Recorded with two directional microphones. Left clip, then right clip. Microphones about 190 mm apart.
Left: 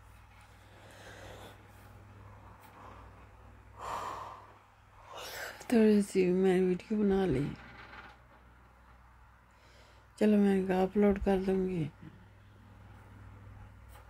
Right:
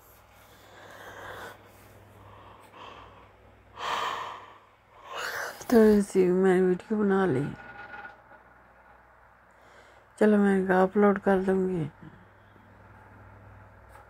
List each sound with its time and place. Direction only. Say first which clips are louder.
3.7 s gasp: right 8 dB; 35° right (ahead or behind)
5.7 s speech: right 7 dB; 10° right (ahead or behind)
10.1 s speech: right 6 dB; centre (ahead or behind)
11.6 s speech: right 6 dB; 40° right (ahead or behind)